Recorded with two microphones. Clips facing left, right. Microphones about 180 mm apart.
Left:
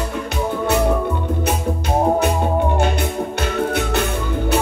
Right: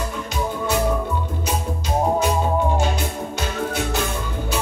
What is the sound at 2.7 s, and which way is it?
Music, 60° left (ahead or behind).